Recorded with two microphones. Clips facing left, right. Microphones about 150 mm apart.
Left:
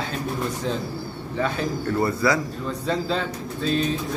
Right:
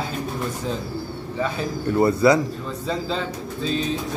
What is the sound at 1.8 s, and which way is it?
Speech, 20° right (ahead or behind).